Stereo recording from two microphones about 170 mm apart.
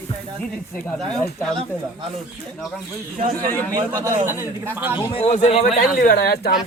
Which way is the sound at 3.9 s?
15° right (ahead or behind).